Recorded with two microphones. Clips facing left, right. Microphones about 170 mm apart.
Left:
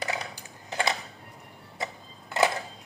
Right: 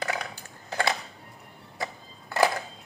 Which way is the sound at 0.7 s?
20° left (ahead or behind).